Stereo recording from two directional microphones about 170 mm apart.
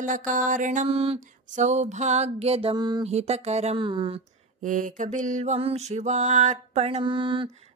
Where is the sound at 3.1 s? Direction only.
40° right (ahead or behind).